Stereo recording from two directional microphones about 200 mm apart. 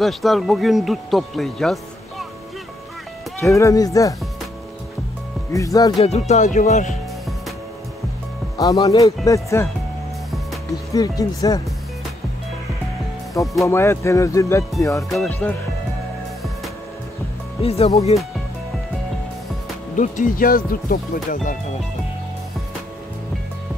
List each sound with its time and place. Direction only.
0.0 s speech: centre (ahead or behind)
3.3 s speech: 15° left (ahead or behind)
5.5 s speech: 15° left (ahead or behind)
5.9 s speech: 30° left (ahead or behind)
8.5 s speech: 15° left (ahead or behind)
10.9 s speech: 15° left (ahead or behind)
13.4 s speech: 15° left (ahead or behind)
15.0 s speech: 5° left (ahead or behind)
17.6 s speech: 30° left (ahead or behind)
20.0 s speech: 40° left (ahead or behind)